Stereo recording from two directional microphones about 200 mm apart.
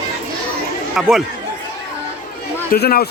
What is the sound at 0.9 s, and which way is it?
Speech, centre (ahead or behind).